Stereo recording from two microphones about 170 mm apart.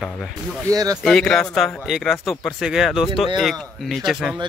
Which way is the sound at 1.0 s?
5° left (ahead or behind).